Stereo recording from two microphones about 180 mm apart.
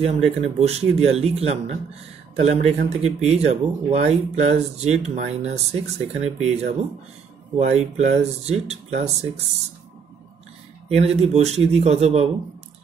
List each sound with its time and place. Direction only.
0.0 s speech: 35° right (ahead or behind)
10.9 s speech: 35° right (ahead or behind)